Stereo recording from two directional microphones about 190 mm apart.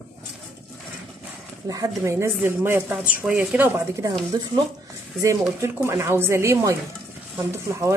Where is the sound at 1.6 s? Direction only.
15° right (ahead or behind).